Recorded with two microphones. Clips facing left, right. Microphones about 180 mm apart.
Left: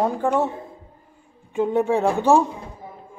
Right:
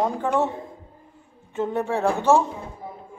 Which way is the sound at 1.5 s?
15° left (ahead or behind).